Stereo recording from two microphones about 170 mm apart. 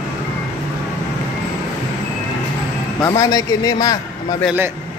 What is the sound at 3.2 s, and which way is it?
Speech, 25° left (ahead or behind).